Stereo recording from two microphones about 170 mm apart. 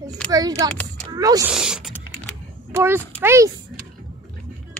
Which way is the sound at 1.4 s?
5° right (ahead or behind).